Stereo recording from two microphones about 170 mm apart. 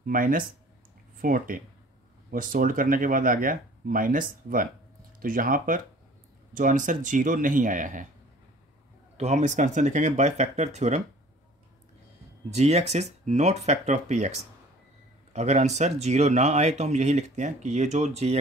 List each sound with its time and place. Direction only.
0.0 s speech: 55° right (ahead or behind)
9.1 s speech: 40° right (ahead or behind)
12.5 s speech: 40° right (ahead or behind)
15.3 s speech: 40° right (ahead or behind)